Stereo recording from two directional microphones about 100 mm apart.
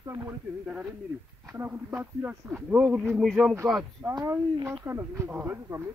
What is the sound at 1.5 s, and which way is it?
A man's voice, 25° right (ahead or behind).